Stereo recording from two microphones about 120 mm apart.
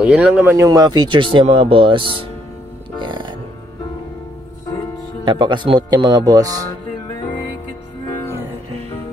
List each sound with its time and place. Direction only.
0.0 s speech: 10° right (ahead or behind)
0.7 s speech: 35° right (ahead or behind)
3.0 s music: 40° right (ahead or behind)
5.2 s speech: 40° right (ahead or behind)